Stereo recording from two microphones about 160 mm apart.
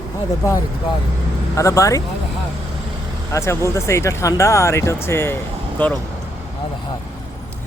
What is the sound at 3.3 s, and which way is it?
Speech, 20° left (ahead or behind).